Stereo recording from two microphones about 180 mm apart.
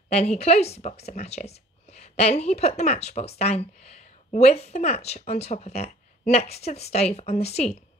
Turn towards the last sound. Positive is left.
turn(degrees=35)  # may be behind; listen again after turning